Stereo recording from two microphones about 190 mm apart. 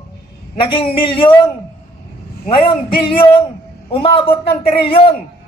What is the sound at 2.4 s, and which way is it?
Speech, 25° left (ahead or behind).